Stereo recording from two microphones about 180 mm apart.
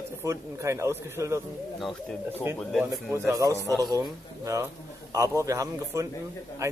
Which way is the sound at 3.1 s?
15° right (ahead or behind).